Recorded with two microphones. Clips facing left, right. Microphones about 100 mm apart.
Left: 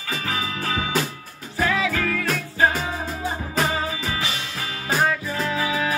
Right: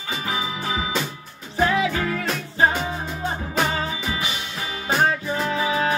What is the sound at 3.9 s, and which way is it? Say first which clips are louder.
Music: even; 25° right (ahead or behind).